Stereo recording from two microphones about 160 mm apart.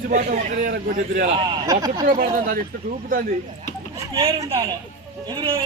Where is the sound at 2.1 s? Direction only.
60° right (ahead or behind).